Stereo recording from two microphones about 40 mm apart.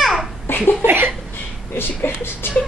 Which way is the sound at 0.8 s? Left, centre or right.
Right.